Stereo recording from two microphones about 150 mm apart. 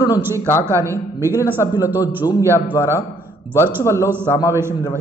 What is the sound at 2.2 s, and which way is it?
Speech, 15° left (ahead or behind).